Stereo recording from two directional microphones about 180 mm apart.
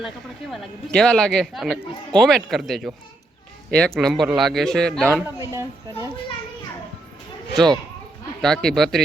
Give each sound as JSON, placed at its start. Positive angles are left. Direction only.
{"t": 0.5, "sound": "a man's voice", "side_deg": 5}
{"t": 5.2, "sound": "speech", "side_deg": -15}
{"t": 8.4, "sound": "a man's voice", "side_deg": 5}